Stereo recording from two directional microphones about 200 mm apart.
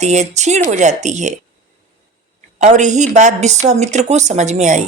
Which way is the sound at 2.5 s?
35° right (ahead or behind).